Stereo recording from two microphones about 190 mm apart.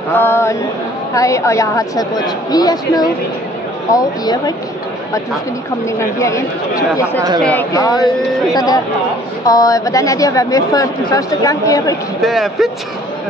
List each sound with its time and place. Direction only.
0.1 s a woman's voice: 10° left (ahead or behind)
5.9 s a woman's voice: 15° left (ahead or behind)
12.2 s speech: centre (ahead or behind)